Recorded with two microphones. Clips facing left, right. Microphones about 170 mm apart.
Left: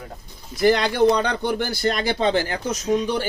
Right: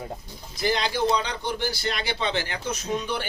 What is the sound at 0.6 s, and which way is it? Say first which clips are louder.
Speech: left 8 dB; 55° left (ahead or behind).